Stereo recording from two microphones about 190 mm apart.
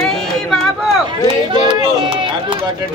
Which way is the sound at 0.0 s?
5° left (ahead or behind).